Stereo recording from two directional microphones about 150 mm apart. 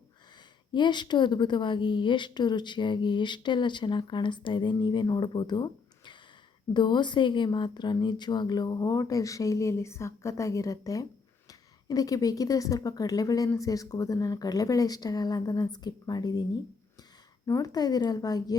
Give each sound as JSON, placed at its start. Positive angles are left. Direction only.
{"t": 0.7, "sound": "a woman's voice", "side_deg": 30}